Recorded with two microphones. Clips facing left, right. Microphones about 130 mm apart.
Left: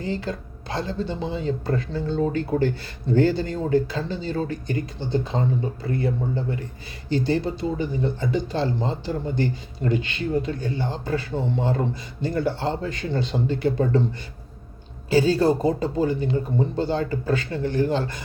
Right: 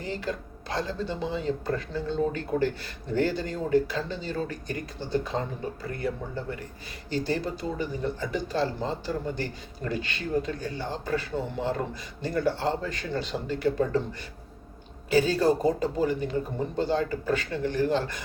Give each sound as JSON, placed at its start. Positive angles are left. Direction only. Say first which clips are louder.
{"t": 0.0, "sound": "speech", "louder": "left 4 dB", "side_deg": 30}